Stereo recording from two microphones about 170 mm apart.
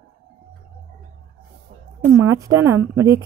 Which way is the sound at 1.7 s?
45° right (ahead or behind).